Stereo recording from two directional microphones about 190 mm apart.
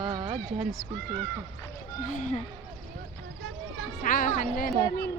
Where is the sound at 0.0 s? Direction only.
25° right (ahead or behind).